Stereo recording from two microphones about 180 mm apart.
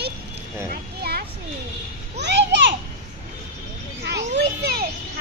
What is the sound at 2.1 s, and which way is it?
Children playing, 70° right (ahead or behind).